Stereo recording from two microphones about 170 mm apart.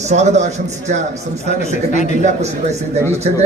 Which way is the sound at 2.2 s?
40° right (ahead or behind).